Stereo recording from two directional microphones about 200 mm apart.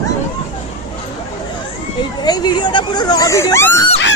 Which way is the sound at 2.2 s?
20° left (ahead or behind).